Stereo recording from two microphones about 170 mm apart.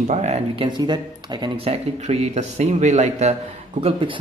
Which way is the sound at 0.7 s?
25° right (ahead or behind).